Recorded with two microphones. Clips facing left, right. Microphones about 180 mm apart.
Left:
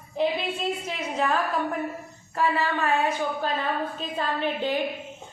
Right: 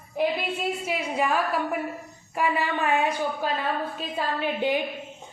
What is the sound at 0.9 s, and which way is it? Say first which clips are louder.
A woman's voice: right 2 dB; 10° right (ahead or behind).